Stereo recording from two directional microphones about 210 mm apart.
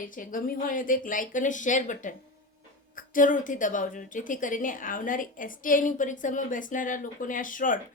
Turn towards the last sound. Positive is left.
turn(degrees=40)  # may be behind; listen again after turning